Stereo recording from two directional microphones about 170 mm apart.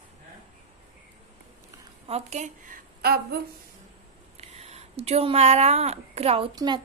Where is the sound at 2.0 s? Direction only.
40° right (ahead or behind).